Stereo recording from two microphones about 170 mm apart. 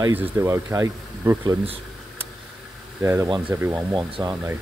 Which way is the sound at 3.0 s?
15° right (ahead or behind).